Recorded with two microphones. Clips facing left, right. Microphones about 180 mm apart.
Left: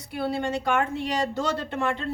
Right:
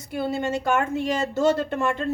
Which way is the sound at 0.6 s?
45° right (ahead or behind).